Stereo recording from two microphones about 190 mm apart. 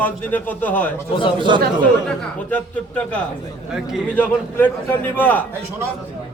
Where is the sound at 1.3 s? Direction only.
25° right (ahead or behind).